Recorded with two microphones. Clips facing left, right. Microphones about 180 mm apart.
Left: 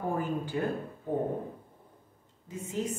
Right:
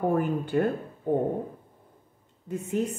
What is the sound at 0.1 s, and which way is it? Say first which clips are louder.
Speech: right 6 dB; 60° right (ahead or behind).